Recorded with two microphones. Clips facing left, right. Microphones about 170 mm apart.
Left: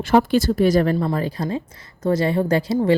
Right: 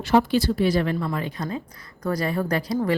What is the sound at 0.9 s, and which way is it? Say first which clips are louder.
Speech: left 5 dB; 35° left (ahead or behind).